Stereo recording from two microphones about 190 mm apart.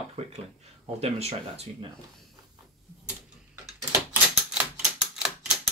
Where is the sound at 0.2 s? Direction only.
30° right (ahead or behind).